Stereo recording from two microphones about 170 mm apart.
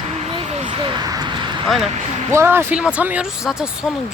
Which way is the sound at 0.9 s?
25° right (ahead or behind).